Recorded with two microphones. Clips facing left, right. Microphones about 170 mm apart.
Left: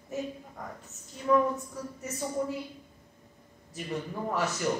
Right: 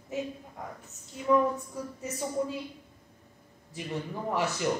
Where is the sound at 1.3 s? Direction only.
20° right (ahead or behind).